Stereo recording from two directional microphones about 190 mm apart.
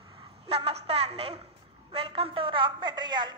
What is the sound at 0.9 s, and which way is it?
A woman's voice, 35° right (ahead or behind).